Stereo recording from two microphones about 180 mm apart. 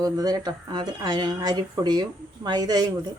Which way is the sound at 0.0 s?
20° right (ahead or behind).